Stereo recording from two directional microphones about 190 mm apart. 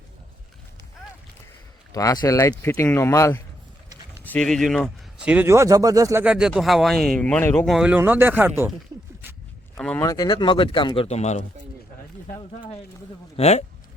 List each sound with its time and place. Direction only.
1.9 s speech: 20° left (ahead or behind); by 6.2 s 15° right (ahead or behind)
6.2 s speech: 5° right (ahead or behind)
9.2 s zipper: 10° right (ahead or behind)
9.7 s speech: 5° left (ahead or behind)
10.1 s speech: 20° left (ahead or behind)
13.3 s speech: 35° left (ahead or behind)